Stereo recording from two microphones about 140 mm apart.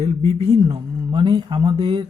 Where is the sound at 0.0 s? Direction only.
50° right (ahead or behind).